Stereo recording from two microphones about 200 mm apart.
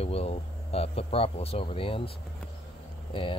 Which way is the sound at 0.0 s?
30° left (ahead or behind).